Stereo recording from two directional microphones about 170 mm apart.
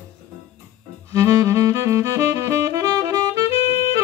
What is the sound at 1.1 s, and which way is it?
Saxophone, 20° right (ahead or behind).